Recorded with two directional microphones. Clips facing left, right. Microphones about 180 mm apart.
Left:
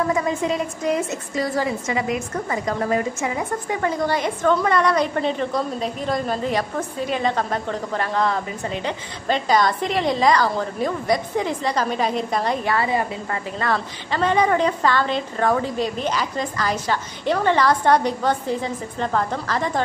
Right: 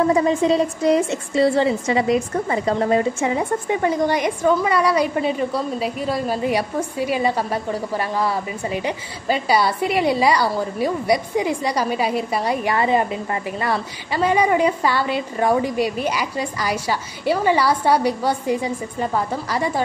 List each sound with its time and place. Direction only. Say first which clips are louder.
0.0 s a woman's voice: right 5 dB; 30° right (ahead or behind); by 12.8 s 10° right (ahead or behind)
12.8 s a woman's voice: right 4 dB; 25° right (ahead or behind)
13.6 s a woman's voice: right 1 dB; 10° right (ahead or behind)